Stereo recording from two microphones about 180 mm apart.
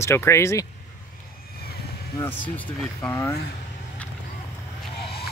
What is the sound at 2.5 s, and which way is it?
Speech, 10° left (ahead or behind).